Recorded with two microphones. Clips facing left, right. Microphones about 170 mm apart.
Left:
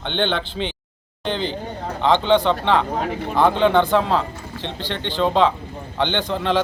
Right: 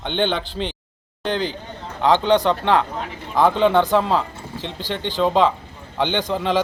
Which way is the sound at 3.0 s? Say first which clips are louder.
Left 6 dB; 55° left (ahead or behind).